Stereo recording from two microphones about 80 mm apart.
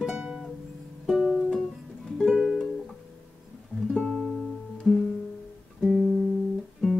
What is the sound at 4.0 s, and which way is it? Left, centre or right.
Music, centre.